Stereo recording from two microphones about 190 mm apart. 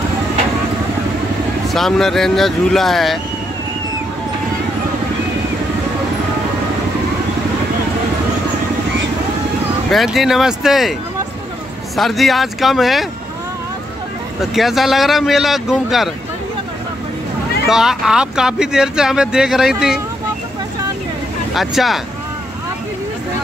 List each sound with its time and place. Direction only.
1.7 s speech: centre (ahead or behind)
9.8 s speech: centre (ahead or behind)
14.4 s speech: centre (ahead or behind)
17.6 s speech: 5° right (ahead or behind)
21.5 s speech: centre (ahead or behind)